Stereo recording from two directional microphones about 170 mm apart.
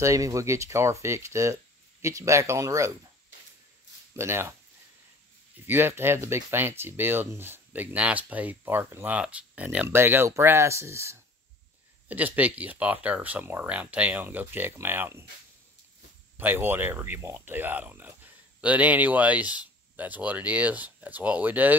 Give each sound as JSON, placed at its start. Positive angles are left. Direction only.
{"t": 0.0, "sound": "speech", "side_deg": -20}
{"t": 4.1, "sound": "speech", "side_deg": -15}
{"t": 5.7, "sound": "speech", "side_deg": -15}
{"t": 16.3, "sound": "speech", "side_deg": -10}